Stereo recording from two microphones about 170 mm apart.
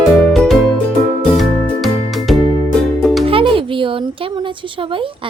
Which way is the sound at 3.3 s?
30° right (ahead or behind).